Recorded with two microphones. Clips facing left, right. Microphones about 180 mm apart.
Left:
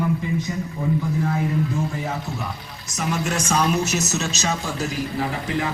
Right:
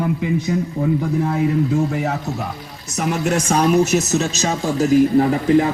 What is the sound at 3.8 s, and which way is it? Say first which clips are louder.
Speech: right 7 dB; 55° right (ahead or behind).